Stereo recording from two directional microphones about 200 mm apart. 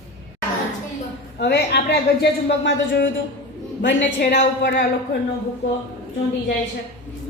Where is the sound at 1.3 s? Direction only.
55° left (ahead or behind).